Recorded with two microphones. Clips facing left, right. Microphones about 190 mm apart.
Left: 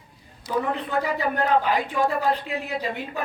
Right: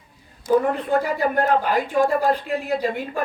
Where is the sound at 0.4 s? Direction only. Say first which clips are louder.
Right 7 dB; 50° right (ahead or behind).